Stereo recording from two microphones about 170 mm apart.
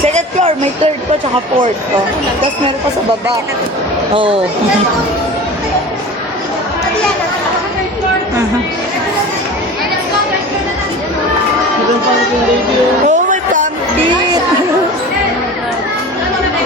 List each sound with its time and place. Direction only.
0.1 s speech: 40° right (ahead or behind)
4.1 s speech: 30° right (ahead or behind)
13.1 s music: 50° right (ahead or behind)